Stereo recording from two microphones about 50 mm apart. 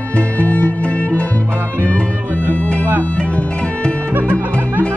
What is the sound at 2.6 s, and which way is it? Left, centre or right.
Music, left.